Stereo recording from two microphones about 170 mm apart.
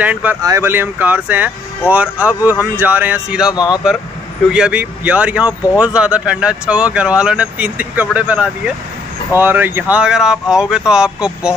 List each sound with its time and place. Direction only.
0.0 s speech: 10° right (ahead or behind)
3.5 s speech: 25° left (ahead or behind)
4.5 s speech: 5° right (ahead or behind)